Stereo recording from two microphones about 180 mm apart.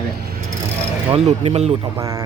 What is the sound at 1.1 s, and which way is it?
Speech, 35° right (ahead or behind).